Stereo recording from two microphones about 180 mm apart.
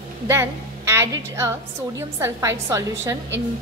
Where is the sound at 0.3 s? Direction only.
15° right (ahead or behind).